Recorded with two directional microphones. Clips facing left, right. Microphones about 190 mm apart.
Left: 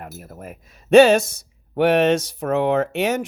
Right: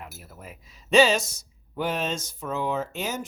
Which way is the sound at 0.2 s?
50° left (ahead or behind).